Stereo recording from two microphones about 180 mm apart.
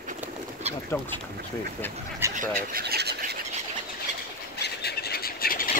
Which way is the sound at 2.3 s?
50° right (ahead or behind).